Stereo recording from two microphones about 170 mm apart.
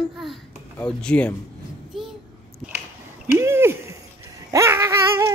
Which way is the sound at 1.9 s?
Centre (ahead or behind).